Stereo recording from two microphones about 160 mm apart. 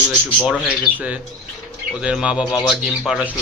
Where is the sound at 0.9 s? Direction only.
10° right (ahead or behind).